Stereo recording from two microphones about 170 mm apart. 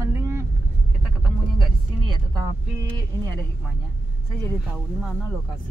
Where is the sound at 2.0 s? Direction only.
25° right (ahead or behind).